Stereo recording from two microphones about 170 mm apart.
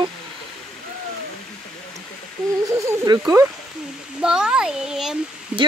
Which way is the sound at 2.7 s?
15° right (ahead or behind).